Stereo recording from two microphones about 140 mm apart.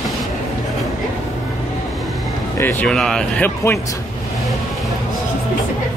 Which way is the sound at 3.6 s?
20° left (ahead or behind).